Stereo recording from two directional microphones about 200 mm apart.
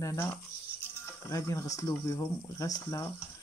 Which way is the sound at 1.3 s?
15° left (ahead or behind).